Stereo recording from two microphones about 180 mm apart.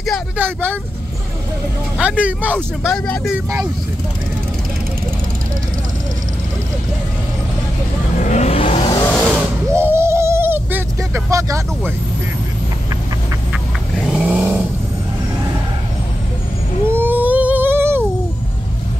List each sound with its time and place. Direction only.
0.4 s speech: 10° right (ahead or behind)
2.0 s speech: 10° right (ahead or behind)
8.2 s vehicle: 40° left (ahead or behind)
9.8 s a sound: 15° right (ahead or behind)
13.9 s vehicle: 5° right (ahead or behind)
16.8 s a sound: 10° right (ahead or behind)